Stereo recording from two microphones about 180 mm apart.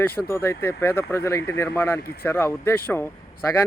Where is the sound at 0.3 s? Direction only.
15° left (ahead or behind).